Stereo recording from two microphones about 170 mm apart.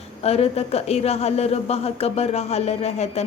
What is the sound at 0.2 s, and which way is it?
Speech, 35° left (ahead or behind).